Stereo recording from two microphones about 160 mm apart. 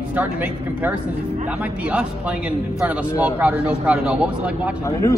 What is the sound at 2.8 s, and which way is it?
Speech, 10° right (ahead or behind).